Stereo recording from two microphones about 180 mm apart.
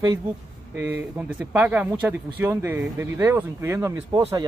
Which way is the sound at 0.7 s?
10° right (ahead or behind).